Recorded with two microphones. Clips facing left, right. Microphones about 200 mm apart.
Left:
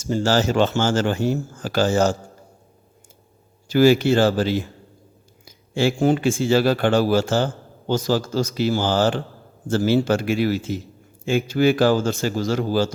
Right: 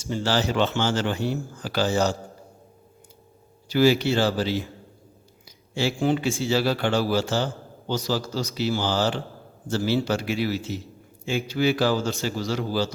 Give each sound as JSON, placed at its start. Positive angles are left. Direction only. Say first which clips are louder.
{"t": 0.0, "sound": "a man's voice", "louder": "left 5 dB", "side_deg": 45}
{"t": 3.7, "sound": "a man's voice", "louder": "left 4 dB", "side_deg": 50}